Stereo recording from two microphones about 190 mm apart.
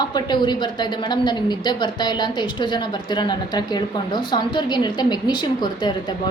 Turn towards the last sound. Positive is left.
turn(degrees=25)  # may be behind; listen again after turning